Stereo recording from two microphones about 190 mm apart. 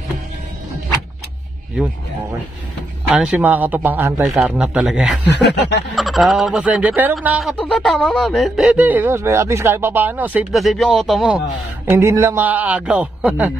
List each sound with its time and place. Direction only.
3.1 s a man's voice: 5° right (ahead or behind)
5.3 s snicker: 65° left (ahead or behind)
5.9 s speech: centre (ahead or behind)
11.8 s a man's voice: 15° right (ahead or behind)